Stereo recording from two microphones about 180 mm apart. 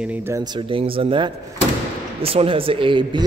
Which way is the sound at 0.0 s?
10° right (ahead or behind).